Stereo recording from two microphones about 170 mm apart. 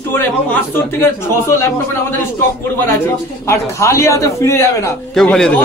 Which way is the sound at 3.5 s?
15° left (ahead or behind).